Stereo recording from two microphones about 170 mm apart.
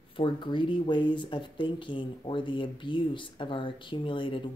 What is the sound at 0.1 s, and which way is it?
Speech, 30° left (ahead or behind).